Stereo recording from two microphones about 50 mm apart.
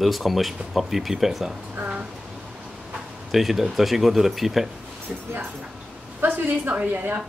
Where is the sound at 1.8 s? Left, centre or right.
Right.